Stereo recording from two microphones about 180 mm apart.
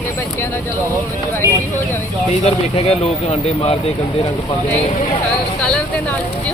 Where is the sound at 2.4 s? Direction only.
35° left (ahead or behind).